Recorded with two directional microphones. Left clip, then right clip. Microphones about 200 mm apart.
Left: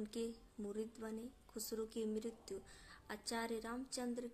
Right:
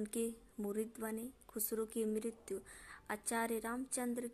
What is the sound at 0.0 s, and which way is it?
A woman's voice, 25° right (ahead or behind).